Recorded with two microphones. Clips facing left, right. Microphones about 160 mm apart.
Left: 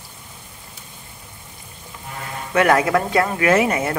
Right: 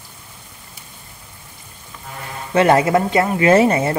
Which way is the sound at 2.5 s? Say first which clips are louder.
Right 3 dB; 25° right (ahead or behind).